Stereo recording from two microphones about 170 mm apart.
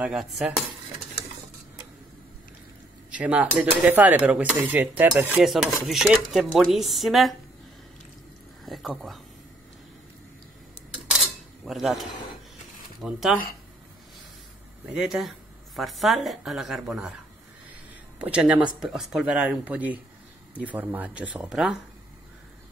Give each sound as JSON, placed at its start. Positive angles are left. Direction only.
{"t": 0.0, "sound": "a woman's voice", "side_deg": -5}
{"t": 3.1, "sound": "speech", "side_deg": -10}
{"t": 8.6, "sound": "speech", "side_deg": 0}
{"t": 11.1, "sound": "cutlery", "side_deg": 0}
{"t": 13.0, "sound": "a woman's voice", "side_deg": 0}
{"t": 15.0, "sound": "a woman's voice", "side_deg": 0}
{"t": 18.2, "sound": "a woman's voice", "side_deg": -10}